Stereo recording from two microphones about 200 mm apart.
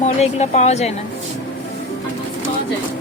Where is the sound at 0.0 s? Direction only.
35° left (ahead or behind).